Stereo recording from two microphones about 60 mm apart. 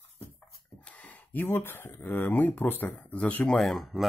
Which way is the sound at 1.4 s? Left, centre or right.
Left.